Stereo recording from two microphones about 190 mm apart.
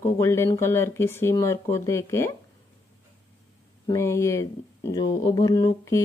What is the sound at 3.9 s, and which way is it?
Speech, 15° left (ahead or behind).